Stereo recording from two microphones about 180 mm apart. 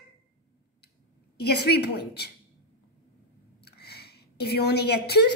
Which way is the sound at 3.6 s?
65° left (ahead or behind).